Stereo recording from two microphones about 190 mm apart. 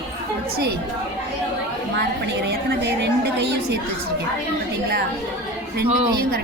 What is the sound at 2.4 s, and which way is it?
A woman's voice, 60° right (ahead or behind).